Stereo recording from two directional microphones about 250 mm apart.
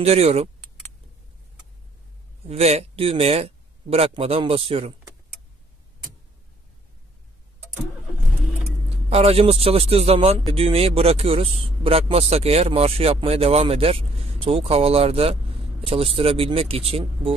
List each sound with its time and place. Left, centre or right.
0.0 s speech: right
2.4 s speech: right
9.1 s speech: right